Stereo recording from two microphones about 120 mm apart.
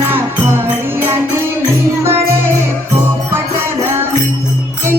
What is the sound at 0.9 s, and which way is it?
Music, 20° right (ahead or behind).